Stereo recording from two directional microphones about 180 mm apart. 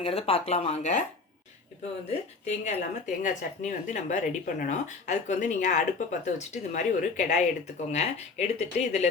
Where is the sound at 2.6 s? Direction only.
45° left (ahead or behind).